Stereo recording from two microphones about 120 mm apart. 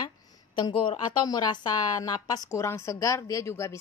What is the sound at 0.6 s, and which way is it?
A woman's voice, 40° left (ahead or behind).